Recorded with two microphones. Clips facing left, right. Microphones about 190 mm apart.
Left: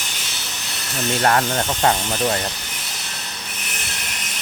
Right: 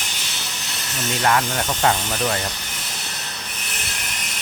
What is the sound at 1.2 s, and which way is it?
Speech, 40° left (ahead or behind).